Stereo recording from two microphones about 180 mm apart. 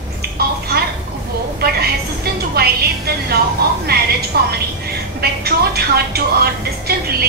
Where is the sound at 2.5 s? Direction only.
60° right (ahead or behind).